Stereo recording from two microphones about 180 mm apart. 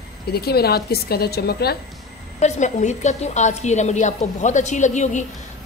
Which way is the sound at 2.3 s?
40° left (ahead or behind).